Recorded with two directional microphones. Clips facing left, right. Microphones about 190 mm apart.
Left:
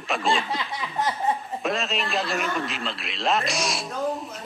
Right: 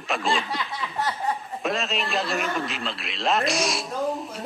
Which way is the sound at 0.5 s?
20° left (ahead or behind).